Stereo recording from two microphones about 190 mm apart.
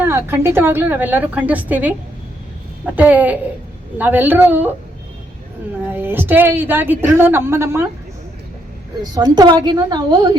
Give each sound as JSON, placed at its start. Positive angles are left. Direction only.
{"t": 0.0, "sound": "a woman's voice", "side_deg": -10}
{"t": 5.9, "sound": "a woman's voice", "side_deg": -10}
{"t": 9.1, "sound": "a woman's voice", "side_deg": -20}